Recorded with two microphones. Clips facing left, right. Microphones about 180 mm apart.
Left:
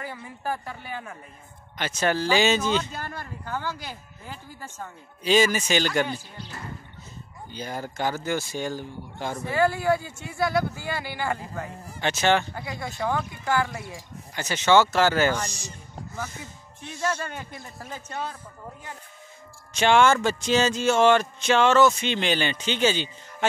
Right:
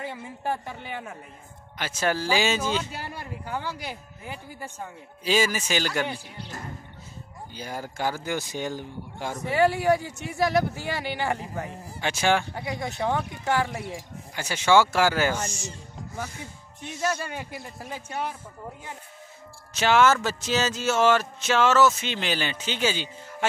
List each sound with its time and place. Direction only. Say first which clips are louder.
0.0 s speech: right 1 dB; 25° right (ahead or behind)
1.8 s speech: left 2 dB; 5° right (ahead or behind)
7.5 s speech: left 2 dB; 10° right (ahead or behind)
14.3 s speech: left 1 dB; 10° right (ahead or behind)
15.4 s speech: right 1 dB; 35° left (ahead or behind)
17.0 s speech: even; 10° right (ahead or behind)
19.7 s speech: left 1 dB; 5° right (ahead or behind)